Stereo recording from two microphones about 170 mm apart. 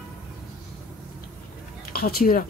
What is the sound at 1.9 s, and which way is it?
Speech, 60° left (ahead or behind).